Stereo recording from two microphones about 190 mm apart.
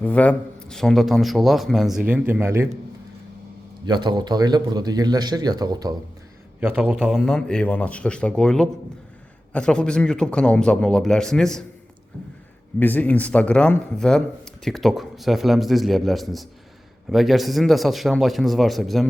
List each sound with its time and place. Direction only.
0.0 s speech: 5° left (ahead or behind); by 2.6 s 15° right (ahead or behind)
3.8 s a man's voice: 25° right (ahead or behind)
6.6 s speech: 10° right (ahead or behind)
12.8 s speech: 10° left (ahead or behind)